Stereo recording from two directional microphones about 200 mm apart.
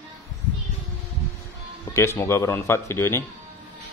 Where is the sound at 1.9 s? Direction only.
15° left (ahead or behind).